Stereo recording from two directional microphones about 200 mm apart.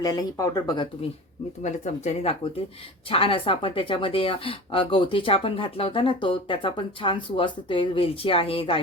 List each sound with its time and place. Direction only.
0.0 s speech: 20° left (ahead or behind)
1.6 s speech: 35° left (ahead or behind)